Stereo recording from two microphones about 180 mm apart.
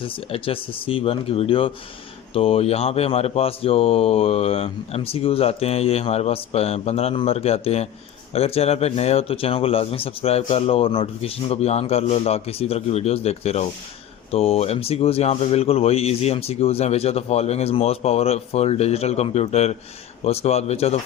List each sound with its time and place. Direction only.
0.0 s speech: 30° left (ahead or behind)